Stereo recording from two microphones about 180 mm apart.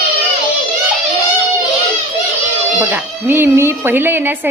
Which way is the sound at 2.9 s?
10° right (ahead or behind).